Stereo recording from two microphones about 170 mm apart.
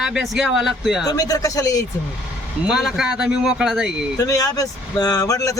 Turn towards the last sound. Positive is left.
turn(degrees=20)  # may be behind; listen again after turning